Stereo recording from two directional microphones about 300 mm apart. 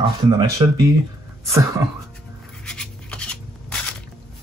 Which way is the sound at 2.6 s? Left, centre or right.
Centre.